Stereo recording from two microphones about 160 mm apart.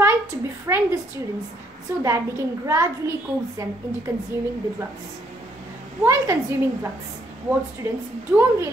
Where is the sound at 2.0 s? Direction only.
20° right (ahead or behind).